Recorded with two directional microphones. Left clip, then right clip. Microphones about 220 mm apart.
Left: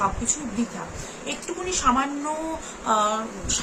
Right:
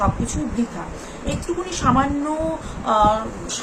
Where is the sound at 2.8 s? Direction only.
10° left (ahead or behind).